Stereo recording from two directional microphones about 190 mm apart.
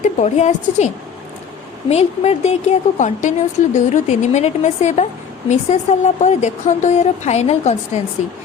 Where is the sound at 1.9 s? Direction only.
35° left (ahead or behind).